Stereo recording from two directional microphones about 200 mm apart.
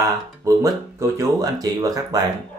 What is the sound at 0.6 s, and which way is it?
Speech, 15° right (ahead or behind).